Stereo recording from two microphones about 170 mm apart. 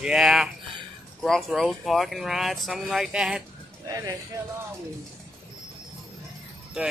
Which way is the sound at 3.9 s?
20° right (ahead or behind).